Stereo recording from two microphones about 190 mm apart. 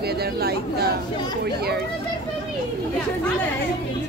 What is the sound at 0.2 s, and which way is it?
Speech, 55° right (ahead or behind).